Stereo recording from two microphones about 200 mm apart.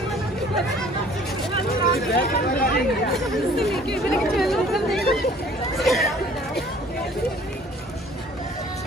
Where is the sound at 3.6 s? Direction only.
Centre (ahead or behind).